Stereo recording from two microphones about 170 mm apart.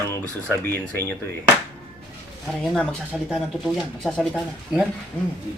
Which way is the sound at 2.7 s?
5° left (ahead or behind).